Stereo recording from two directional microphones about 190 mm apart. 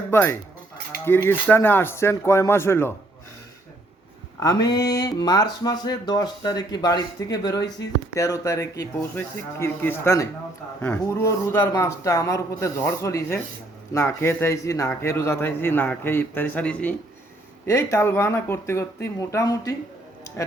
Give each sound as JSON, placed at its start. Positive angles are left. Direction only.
{"t": 0.1, "sound": "speech", "side_deg": 15}
{"t": 4.4, "sound": "speech", "side_deg": 20}